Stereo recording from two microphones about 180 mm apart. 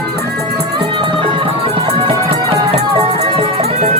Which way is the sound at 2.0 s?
25° right (ahead or behind).